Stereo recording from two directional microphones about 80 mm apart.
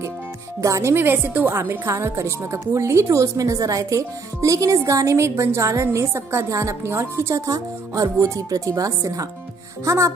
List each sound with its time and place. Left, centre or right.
0.6 s speech: right
0.9 s speech: right